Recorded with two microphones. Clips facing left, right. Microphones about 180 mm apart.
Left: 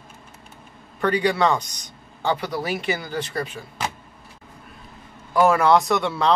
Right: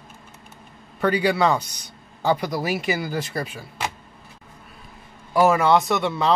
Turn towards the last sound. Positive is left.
turn(degrees=0)  # may be behind; listen again after turning